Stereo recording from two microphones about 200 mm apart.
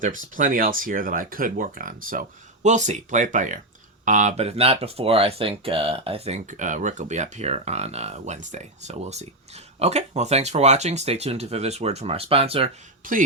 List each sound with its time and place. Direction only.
0.3 s speech: 45° right (ahead or behind)
13.0 s speech: 45° right (ahead or behind)